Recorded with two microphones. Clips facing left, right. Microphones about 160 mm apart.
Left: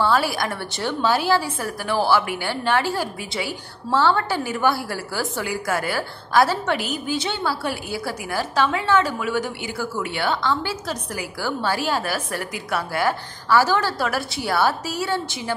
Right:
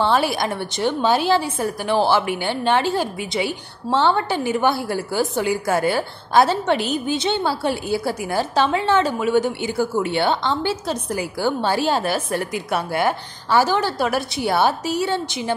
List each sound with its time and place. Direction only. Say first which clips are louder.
0.0 s a woman's voice: right 2 dB; 20° right (ahead or behind)